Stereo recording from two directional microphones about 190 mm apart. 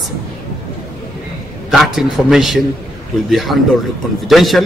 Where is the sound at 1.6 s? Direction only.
Centre (ahead or behind).